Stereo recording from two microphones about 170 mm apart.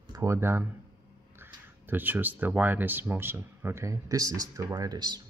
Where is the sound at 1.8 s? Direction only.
10° right (ahead or behind).